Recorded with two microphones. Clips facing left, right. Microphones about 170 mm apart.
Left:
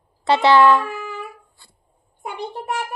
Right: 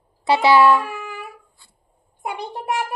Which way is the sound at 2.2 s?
85° right.